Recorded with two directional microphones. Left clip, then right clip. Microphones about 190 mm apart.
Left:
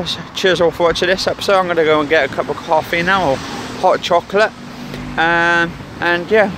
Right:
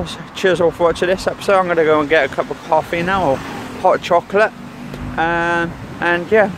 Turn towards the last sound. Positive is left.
turn(degrees=5)  # may be behind; listen again after turning